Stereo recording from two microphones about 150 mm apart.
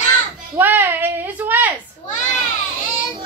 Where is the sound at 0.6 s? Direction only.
15° right (ahead or behind).